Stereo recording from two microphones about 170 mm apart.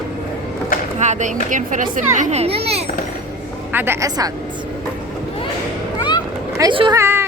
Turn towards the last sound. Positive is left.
turn(degrees=-15)  # may be behind; listen again after turning